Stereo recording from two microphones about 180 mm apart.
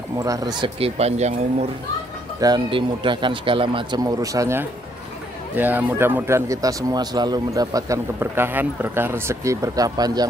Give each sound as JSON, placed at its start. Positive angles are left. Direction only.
{"t": 0.2, "sound": "speech", "side_deg": -20}
{"t": 2.4, "sound": "a man's voice", "side_deg": -25}